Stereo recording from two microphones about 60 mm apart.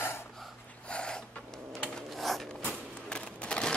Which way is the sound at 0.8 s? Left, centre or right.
Centre.